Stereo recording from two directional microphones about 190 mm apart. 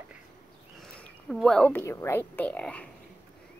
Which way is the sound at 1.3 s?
5° left (ahead or behind).